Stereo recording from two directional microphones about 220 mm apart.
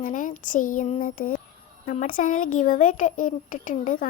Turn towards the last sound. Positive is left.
turn(degrees=35)  # may be behind; listen again after turning